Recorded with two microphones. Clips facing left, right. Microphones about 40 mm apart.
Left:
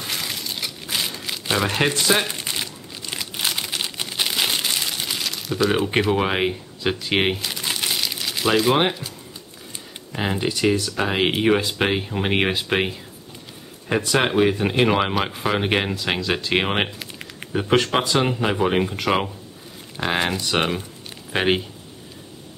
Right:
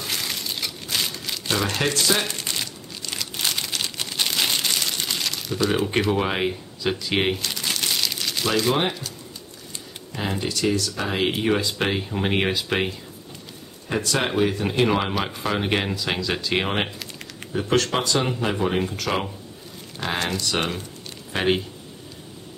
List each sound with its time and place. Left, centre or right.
0.0 s a sound: centre
0.8 s crumpling: centre
5.9 s speech: centre
10.1 s speech: left